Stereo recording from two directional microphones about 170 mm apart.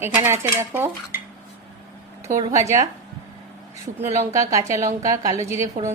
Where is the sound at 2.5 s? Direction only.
20° right (ahead or behind).